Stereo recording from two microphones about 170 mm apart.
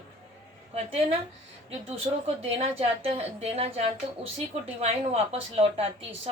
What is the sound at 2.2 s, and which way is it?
A woman's voice, 35° right (ahead or behind).